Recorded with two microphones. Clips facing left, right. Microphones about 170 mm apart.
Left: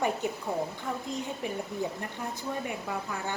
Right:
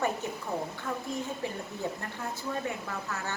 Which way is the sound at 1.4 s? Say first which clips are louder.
Left 1 dB; 20° left (ahead or behind).